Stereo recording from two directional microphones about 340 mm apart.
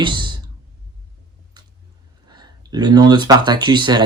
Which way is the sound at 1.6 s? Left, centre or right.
Centre.